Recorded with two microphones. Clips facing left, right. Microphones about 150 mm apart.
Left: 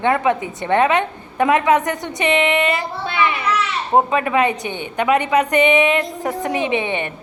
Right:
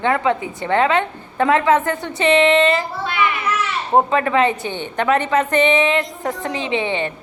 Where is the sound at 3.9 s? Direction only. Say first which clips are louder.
Even; 15° left (ahead or behind).